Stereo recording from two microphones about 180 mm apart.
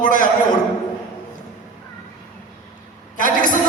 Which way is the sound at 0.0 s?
45° left (ahead or behind).